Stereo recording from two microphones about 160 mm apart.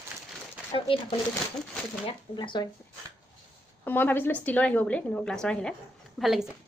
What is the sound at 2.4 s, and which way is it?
Speech, 30° left (ahead or behind).